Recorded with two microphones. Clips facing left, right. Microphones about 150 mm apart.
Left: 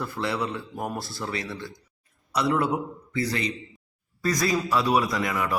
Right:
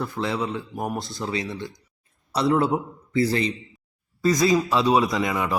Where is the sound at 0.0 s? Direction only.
20° right (ahead or behind).